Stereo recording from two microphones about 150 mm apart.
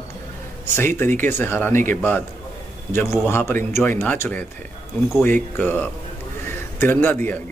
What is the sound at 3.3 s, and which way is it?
Speech, 15° left (ahead or behind).